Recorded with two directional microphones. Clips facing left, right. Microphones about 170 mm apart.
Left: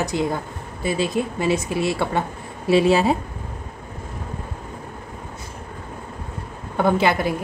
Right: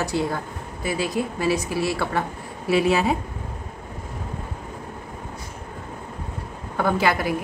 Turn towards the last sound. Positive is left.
turn(degrees=25)  # may be behind; listen again after turning